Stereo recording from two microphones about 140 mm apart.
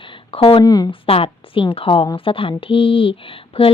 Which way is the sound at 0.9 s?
40° left (ahead or behind).